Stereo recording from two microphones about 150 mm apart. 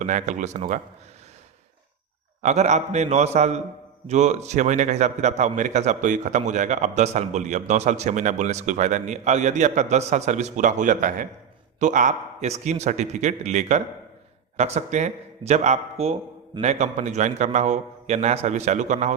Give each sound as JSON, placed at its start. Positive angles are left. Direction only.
{"t": 0.0, "sound": "a man's voice", "side_deg": -55}
{"t": 2.4, "sound": "a man's voice", "side_deg": -50}